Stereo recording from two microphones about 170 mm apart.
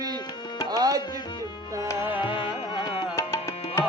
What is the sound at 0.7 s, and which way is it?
Tabla, 20° right (ahead or behind).